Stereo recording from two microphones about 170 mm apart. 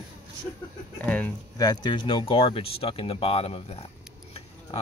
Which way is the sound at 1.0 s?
10° left (ahead or behind).